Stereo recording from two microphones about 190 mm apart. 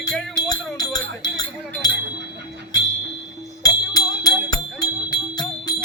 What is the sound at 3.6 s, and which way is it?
Music, 20° left (ahead or behind).